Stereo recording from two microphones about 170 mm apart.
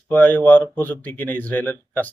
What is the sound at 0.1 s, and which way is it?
Speech, 10° left (ahead or behind).